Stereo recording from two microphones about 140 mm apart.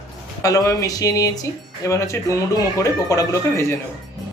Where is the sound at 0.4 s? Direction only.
25° left (ahead or behind).